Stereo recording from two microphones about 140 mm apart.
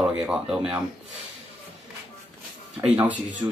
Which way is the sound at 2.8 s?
10° right (ahead or behind).